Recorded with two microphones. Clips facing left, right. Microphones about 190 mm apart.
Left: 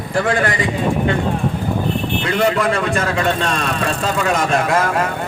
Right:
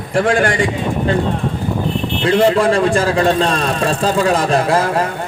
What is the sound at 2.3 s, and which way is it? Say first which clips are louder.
A man's voice: right 6 dB; 30° right (ahead or behind).